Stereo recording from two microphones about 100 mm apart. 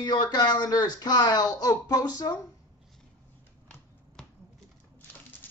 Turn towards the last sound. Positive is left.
turn(degrees=5)  # may be behind; listen again after turning